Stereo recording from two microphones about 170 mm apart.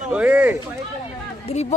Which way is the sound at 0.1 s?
5° right (ahead or behind).